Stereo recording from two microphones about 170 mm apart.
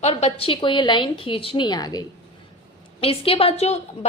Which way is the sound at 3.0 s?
35° left (ahead or behind).